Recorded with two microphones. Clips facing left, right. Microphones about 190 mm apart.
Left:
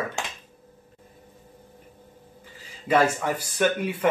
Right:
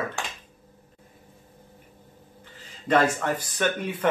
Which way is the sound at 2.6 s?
10° left (ahead or behind).